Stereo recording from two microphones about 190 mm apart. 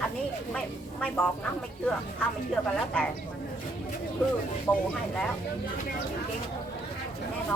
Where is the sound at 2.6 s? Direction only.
15° left (ahead or behind).